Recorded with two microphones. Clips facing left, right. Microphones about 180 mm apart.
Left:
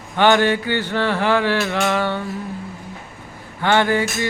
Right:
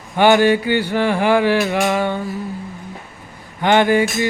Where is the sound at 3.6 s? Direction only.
15° right (ahead or behind).